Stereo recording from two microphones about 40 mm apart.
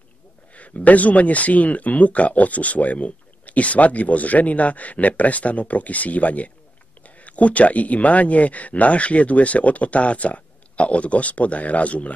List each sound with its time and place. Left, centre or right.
0.5 s speech: left